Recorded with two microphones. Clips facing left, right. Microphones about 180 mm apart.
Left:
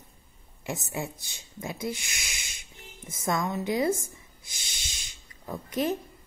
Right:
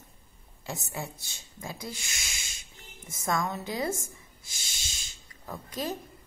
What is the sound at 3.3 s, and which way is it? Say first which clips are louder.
Speech: left 3 dB; 20° left (ahead or behind).